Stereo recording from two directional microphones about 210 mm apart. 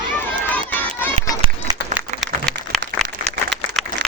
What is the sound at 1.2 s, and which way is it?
Run, 30° right (ahead or behind).